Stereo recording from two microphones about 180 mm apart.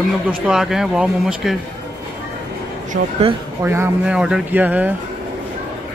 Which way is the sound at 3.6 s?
15° right (ahead or behind).